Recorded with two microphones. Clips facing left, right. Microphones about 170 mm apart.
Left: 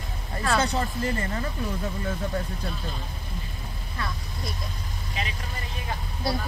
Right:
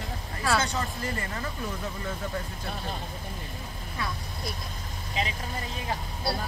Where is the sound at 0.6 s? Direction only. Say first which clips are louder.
Left 4 dB; 35° left (ahead or behind).